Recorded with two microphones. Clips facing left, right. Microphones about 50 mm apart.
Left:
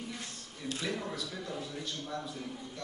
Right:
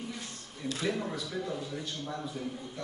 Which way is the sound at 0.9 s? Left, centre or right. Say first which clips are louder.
Right 3 dB; centre.